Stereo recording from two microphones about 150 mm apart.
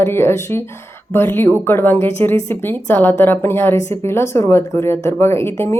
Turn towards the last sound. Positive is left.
turn(degrees=15)  # may be behind; listen again after turning